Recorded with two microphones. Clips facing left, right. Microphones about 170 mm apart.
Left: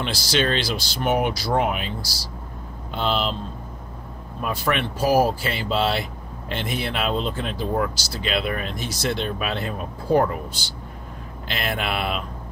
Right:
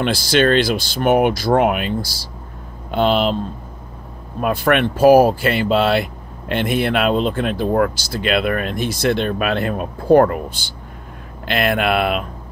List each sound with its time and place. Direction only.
0.0 s speech: 55° right (ahead or behind)
4.4 s speech: 60° right (ahead or behind)